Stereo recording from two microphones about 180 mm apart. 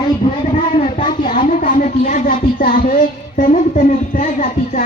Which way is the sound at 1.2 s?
50° left (ahead or behind).